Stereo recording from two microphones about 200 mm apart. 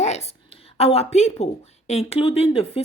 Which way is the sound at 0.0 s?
35° left (ahead or behind).